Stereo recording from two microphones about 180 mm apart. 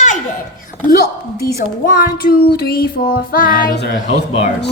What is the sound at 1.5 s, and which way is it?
Child singing, 50° left (ahead or behind).